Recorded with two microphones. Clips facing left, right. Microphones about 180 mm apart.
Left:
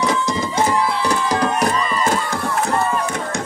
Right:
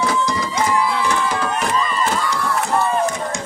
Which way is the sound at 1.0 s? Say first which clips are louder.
Left 2 dB; 40° left (ahead or behind).